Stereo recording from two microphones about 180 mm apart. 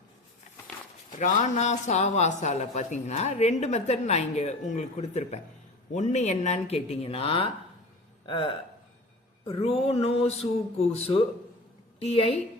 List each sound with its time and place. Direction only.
1.2 s speech: 40° left (ahead or behind)